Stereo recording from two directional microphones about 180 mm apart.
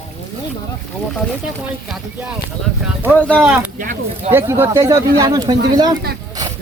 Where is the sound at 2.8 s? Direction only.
10° right (ahead or behind).